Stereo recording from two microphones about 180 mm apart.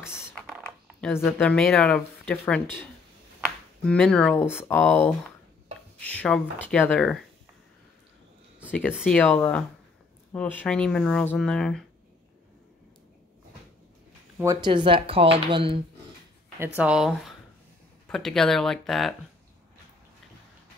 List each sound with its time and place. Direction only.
1.0 s speech: 5° left (ahead or behind)
3.8 s speech: 5° left (ahead or behind)
9.0 s speech: 5° left (ahead or behind)
14.4 s speech: 15° right (ahead or behind)
14.7 s speech: 30° right (ahead or behind)
16.5 s speech: 10° right (ahead or behind)